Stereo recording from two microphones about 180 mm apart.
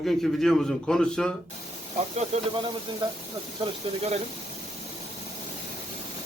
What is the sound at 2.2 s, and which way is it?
Speech, 35° right (ahead or behind).